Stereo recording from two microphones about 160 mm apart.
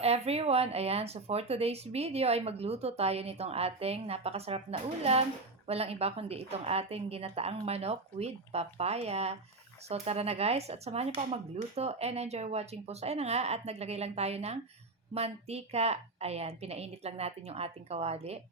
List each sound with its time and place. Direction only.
0.0 s speech: 40° right (ahead or behind)
5.6 s speech: 40° right (ahead or behind)